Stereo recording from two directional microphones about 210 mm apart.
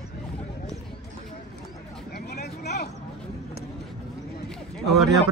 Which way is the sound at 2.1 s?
50° left (ahead or behind).